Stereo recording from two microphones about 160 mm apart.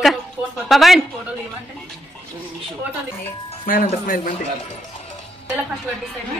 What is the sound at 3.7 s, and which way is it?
Speech, 60° left (ahead or behind).